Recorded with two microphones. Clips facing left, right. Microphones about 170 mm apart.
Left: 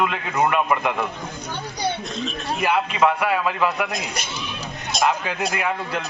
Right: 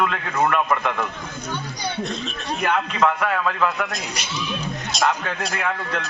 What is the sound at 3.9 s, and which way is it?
A man's voice, 55° left (ahead or behind).